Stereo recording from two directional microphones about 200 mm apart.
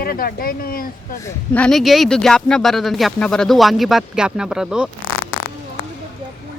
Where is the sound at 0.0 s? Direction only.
50° left (ahead or behind).